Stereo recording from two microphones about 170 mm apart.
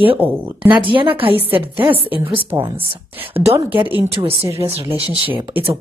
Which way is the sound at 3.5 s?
10° right (ahead or behind).